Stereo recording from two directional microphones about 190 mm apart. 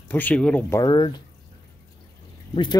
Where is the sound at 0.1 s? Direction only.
10° left (ahead or behind).